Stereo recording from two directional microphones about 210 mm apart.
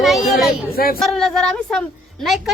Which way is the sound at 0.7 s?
45° left (ahead or behind).